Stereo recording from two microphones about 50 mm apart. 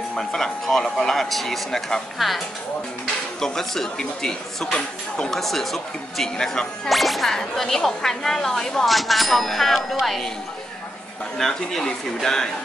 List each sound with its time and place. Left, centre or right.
0.1 s speech: centre
2.1 s speech: centre
3.3 s speech: centre
4.7 s speech: centre
5.3 s speech: centre
6.9 s speech: centre
11.3 s speech: centre